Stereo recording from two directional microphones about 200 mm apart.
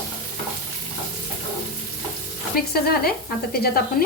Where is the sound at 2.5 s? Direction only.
50° left (ahead or behind).